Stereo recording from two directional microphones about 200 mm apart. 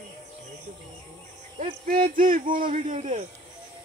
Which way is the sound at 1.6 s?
40° right (ahead or behind).